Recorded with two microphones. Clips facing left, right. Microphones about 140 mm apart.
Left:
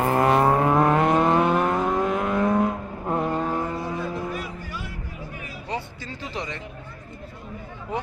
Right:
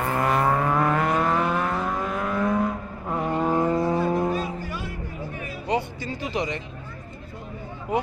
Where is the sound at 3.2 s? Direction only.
10° right (ahead or behind).